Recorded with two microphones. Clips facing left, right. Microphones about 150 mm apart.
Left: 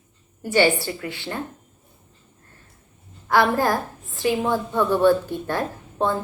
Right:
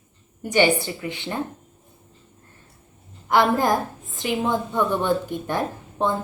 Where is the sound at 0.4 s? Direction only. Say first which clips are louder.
Even; 20° right (ahead or behind).